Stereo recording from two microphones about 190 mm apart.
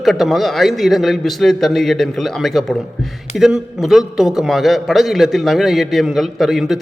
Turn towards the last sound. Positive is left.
turn(degrees=0)  # may be behind; listen again after turning